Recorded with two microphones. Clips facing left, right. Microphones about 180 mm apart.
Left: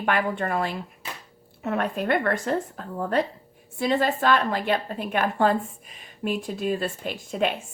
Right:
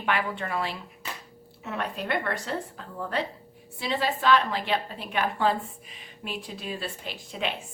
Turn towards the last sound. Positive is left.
turn(degrees=50)  # may be behind; listen again after turning